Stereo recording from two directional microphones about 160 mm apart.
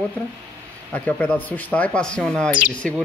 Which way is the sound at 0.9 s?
10° left (ahead or behind).